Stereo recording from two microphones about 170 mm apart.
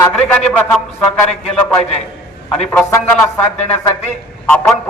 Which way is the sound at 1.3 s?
40° left (ahead or behind).